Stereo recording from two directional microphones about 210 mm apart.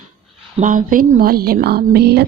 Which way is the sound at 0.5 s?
40° right (ahead or behind).